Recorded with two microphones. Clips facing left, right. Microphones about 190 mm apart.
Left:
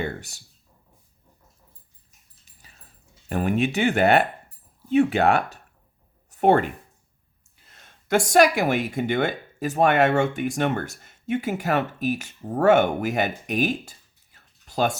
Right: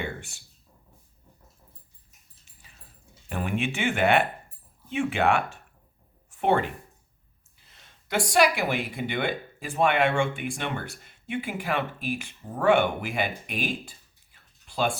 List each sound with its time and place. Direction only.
0.0 s speech: 40° left (ahead or behind)
3.2 s speech: 40° left (ahead or behind)
7.7 s speech: 50° left (ahead or behind)
14.3 s a sound: 40° left (ahead or behind)